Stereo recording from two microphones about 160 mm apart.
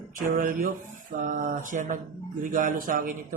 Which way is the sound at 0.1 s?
55° right (ahead or behind).